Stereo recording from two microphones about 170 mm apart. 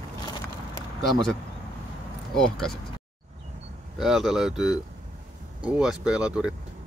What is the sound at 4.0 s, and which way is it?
Speech, centre (ahead or behind).